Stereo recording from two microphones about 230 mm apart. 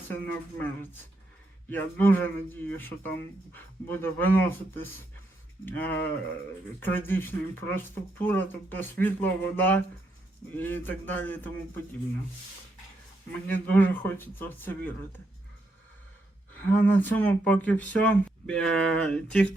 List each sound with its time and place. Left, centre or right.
0.1 s speech: centre
13.5 s speech: centre
16.6 s speech: centre